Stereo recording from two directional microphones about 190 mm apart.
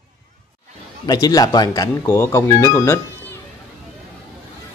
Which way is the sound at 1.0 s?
20° left (ahead or behind).